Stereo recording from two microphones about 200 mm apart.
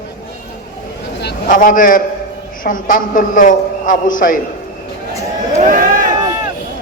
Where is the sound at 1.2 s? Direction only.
50° left (ahead or behind).